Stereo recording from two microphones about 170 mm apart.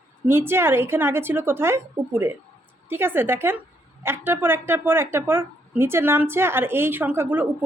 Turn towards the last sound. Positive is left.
turn(degrees=-10)  # may be behind; listen again after turning